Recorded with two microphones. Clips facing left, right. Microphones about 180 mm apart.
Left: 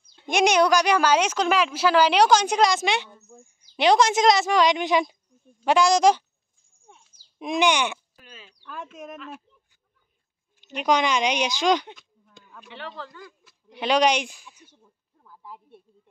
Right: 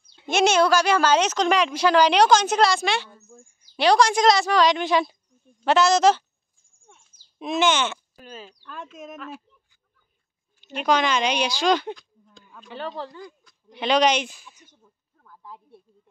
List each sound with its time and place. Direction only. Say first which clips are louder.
0.3 s a woman's voice: even; 15° left (ahead or behind)
7.3 s a woman's voice: even; 15° left (ahead or behind)
8.2 s speech: right 9 dB; 40° right (ahead or behind)
10.6 s a woman's voice: even; 15° left (ahead or behind)
11.9 s a sound: right 11 dB; centre (ahead or behind)
12.6 s speech: right 6 dB; 40° right (ahead or behind)
13.4 s speech: even; 5° left (ahead or behind)
15.2 s a sound: even; 5° left (ahead or behind)